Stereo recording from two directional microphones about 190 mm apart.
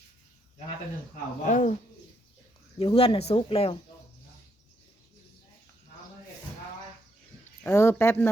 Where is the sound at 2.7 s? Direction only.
30° left (ahead or behind).